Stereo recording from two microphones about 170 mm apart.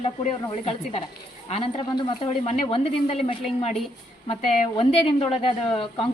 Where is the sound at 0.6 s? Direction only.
35° left (ahead or behind).